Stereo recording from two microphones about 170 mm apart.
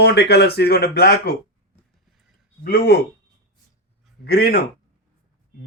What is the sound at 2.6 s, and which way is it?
Speech, 65° left (ahead or behind).